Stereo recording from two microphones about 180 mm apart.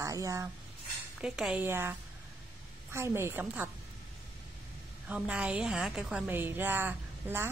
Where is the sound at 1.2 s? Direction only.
5° right (ahead or behind).